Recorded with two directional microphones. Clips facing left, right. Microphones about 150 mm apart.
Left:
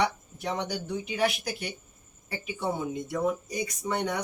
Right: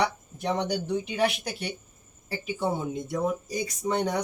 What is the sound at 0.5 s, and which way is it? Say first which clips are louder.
Speech: right 5 dB; 30° right (ahead or behind).